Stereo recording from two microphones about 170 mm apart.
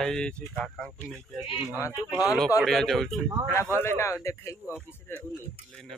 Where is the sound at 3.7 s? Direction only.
15° left (ahead or behind).